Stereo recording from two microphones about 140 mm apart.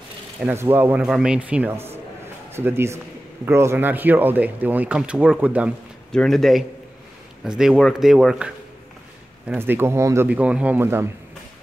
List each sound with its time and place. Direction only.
0.5 s speech: 15° right (ahead or behind)
6.1 s speech: 5° left (ahead or behind)
9.6 s speech: 15° right (ahead or behind)